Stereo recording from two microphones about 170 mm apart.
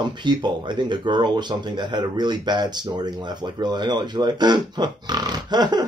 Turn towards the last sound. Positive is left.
turn(degrees=-25)  # may be behind; listen again after turning